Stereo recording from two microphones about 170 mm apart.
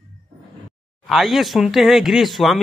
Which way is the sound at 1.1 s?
Centre (ahead or behind).